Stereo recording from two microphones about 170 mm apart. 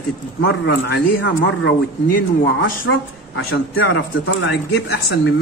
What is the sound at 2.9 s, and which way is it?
Speech, 90° left.